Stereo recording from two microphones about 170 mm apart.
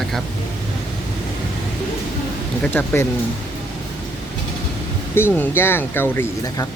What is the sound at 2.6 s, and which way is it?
Speech, 10° left (ahead or behind).